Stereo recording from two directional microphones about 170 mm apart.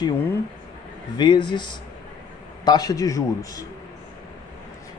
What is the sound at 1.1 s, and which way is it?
Speech, 25° left (ahead or behind).